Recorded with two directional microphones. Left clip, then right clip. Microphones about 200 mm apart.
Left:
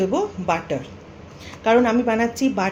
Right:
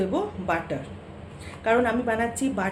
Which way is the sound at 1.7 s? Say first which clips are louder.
Left 5 dB; 35° left (ahead or behind).